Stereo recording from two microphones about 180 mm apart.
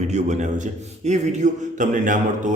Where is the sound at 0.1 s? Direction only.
40° right (ahead or behind).